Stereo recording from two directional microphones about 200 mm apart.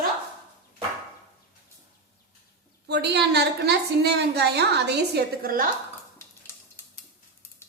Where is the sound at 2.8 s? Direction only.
55° right (ahead or behind).